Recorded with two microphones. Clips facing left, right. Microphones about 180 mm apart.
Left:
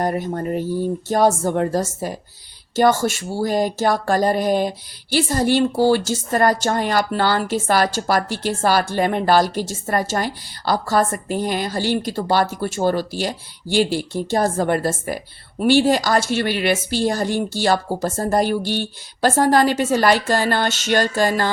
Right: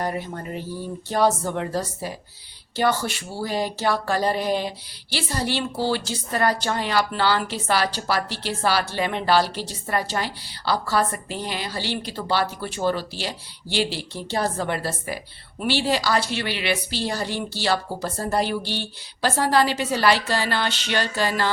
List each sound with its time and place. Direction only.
0.0 s a woman's voice: 45° left (ahead or behind)